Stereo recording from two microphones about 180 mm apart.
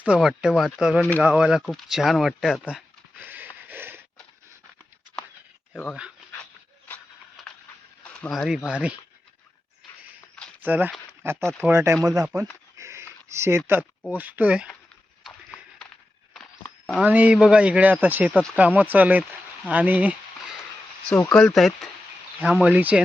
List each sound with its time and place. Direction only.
0.0 s speech: 5° right (ahead or behind)
3.2 s snort: 10° right (ahead or behind)
5.7 s speech: 5° left (ahead or behind)
8.0 s speech: 5° left (ahead or behind)
10.6 s speech: 10° right (ahead or behind)
12.7 s a sound: 15° right (ahead or behind)
14.1 s speech: 10° right (ahead or behind)
16.6 s a sound: 5° left (ahead or behind)
17.0 s speech: 10° right (ahead or behind)
21.3 s speech: 5° left (ahead or behind)